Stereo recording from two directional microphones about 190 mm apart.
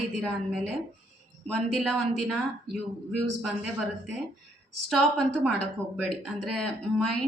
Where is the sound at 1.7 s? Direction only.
Centre (ahead or behind).